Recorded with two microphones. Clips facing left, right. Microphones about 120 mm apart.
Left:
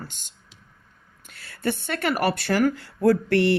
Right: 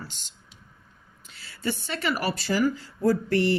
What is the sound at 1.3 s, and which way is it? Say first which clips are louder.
Speech: left 3 dB; 55° left (ahead or behind).